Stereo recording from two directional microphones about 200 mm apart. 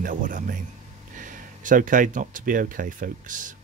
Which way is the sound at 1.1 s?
40° right (ahead or behind).